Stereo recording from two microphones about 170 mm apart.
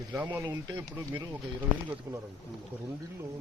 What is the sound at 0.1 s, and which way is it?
Speech, 10° right (ahead or behind).